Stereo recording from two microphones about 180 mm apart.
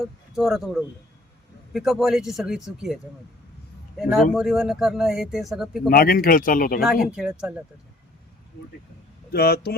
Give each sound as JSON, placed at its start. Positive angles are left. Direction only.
{"t": 0.0, "sound": "a man's voice", "side_deg": 0}
{"t": 4.1, "sound": "a man's voice", "side_deg": 0}
{"t": 5.9, "sound": "speech", "side_deg": 55}
{"t": 7.2, "sound": "a man's voice", "side_deg": -5}
{"t": 9.3, "sound": "speech", "side_deg": 60}